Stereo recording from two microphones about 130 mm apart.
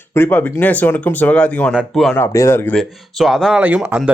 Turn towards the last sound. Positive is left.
turn(degrees=-10)  # may be behind; listen again after turning